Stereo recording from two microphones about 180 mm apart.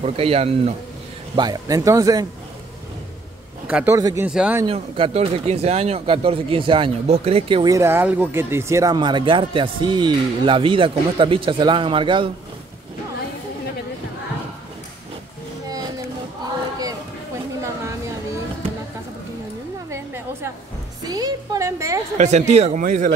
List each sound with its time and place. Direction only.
0.0 s speech: 35° right (ahead or behind)
1.3 s speech: 20° right (ahead or behind)
3.6 s a man's voice: 10° right (ahead or behind)
4.3 s a man's voice: 5° right (ahead or behind)
4.6 s speech: 30° right (ahead or behind)
19.9 s a sound: 15° right (ahead or behind)
21.0 s music: 20° right (ahead or behind)
22.1 s speech: 40° right (ahead or behind)